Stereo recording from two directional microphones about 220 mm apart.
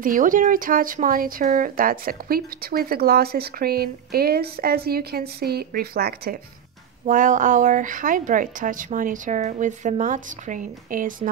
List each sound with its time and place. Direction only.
0.0 s speech: 35° right (ahead or behind)